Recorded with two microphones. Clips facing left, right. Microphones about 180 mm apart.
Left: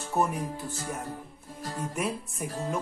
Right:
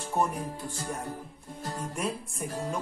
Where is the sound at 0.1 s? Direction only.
5° left (ahead or behind).